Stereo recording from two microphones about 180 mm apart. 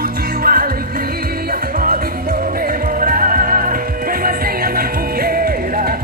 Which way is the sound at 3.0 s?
50° right (ahead or behind).